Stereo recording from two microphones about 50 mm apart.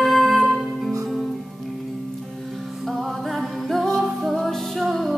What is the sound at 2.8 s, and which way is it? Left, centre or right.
Music, centre.